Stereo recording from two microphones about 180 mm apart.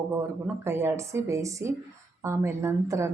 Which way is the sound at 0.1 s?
10° right (ahead or behind).